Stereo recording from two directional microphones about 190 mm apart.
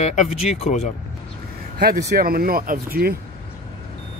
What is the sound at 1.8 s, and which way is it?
Speech, 50° right (ahead or behind).